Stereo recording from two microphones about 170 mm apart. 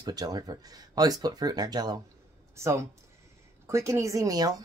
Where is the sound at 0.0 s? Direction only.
25° right (ahead or behind).